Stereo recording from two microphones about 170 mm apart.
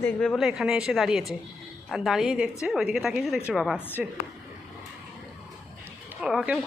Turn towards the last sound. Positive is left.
turn(degrees=0)  # may be behind; listen again after turning